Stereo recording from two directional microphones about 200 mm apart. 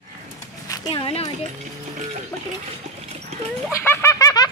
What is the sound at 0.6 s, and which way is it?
Horse, 25° left (ahead or behind).